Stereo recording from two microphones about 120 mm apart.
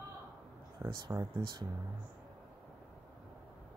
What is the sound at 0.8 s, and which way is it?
Speech, 40° right (ahead or behind).